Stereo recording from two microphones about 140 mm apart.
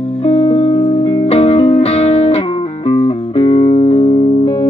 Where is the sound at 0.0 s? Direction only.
45° left (ahead or behind).